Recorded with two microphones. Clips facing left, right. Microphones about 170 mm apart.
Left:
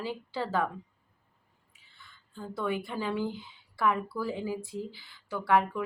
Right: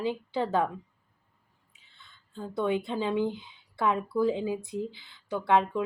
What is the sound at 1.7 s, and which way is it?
Speech, 20° right (ahead or behind).